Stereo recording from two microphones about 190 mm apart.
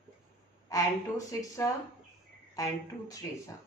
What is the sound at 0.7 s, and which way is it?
Speech, 15° left (ahead or behind).